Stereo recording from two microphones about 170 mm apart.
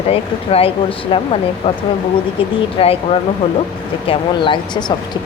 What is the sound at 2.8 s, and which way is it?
Speech, 35° left (ahead or behind).